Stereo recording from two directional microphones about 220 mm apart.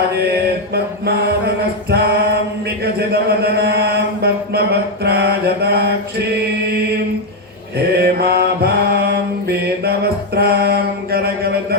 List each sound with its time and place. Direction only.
0.7 s mantra: 45° right (ahead or behind)
7.9 s mantra: 45° right (ahead or behind)